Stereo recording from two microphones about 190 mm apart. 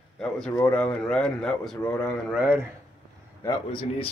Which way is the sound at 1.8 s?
15° left (ahead or behind).